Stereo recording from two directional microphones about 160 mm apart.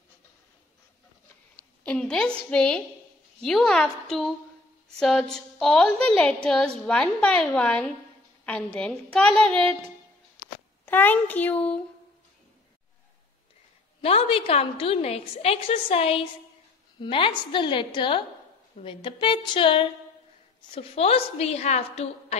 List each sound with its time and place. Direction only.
1.6 s a woman's voice: 5° left (ahead or behind)
10.9 s a child's voice: 10° left (ahead or behind)
14.0 s a woman's voice: 35° left (ahead or behind)